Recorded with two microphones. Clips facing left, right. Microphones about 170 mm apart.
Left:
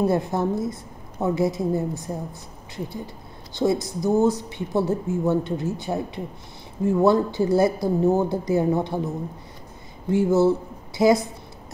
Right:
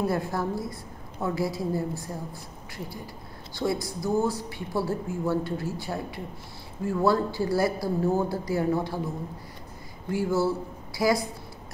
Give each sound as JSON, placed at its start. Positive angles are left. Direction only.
{"t": 0.0, "sound": "speech", "side_deg": 20}